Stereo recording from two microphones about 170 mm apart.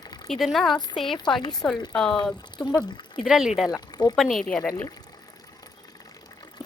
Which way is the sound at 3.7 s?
25° left (ahead or behind).